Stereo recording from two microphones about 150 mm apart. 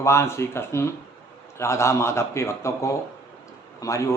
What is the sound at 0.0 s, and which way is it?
Speech, 20° left (ahead or behind).